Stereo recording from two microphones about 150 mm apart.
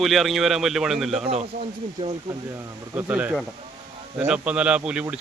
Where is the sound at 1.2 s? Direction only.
45° right (ahead or behind).